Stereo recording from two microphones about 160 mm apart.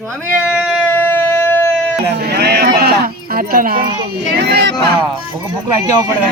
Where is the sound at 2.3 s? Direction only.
80° right; by 3.8 s 65° right (ahead or behind).